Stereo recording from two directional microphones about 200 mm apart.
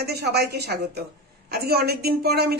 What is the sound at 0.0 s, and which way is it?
A woman's voice, 55° right (ahead or behind).